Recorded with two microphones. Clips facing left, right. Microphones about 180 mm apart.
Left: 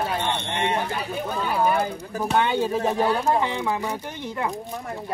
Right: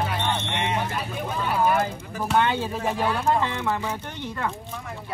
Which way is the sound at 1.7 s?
15° left (ahead or behind).